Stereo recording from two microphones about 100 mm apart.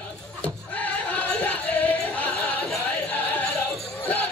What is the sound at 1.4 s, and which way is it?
Music, 15° left (ahead or behind).